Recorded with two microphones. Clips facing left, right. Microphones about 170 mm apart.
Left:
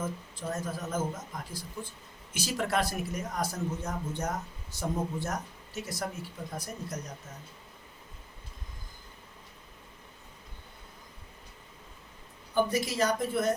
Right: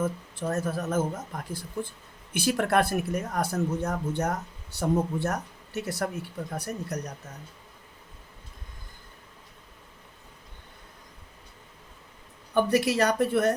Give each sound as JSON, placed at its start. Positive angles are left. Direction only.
{"t": 0.0, "sound": "speech", "side_deg": -65}
{"t": 12.5, "sound": "speech", "side_deg": -70}